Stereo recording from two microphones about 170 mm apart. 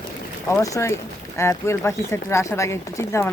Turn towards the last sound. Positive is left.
turn(degrees=15)  # may be behind; listen again after turning